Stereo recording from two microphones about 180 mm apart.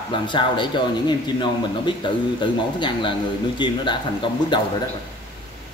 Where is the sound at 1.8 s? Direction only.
25° left (ahead or behind).